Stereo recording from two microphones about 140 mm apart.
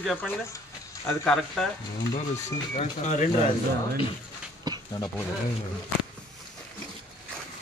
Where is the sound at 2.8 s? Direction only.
55° left (ahead or behind).